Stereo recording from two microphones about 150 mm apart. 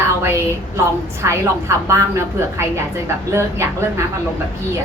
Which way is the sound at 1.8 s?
20° right (ahead or behind).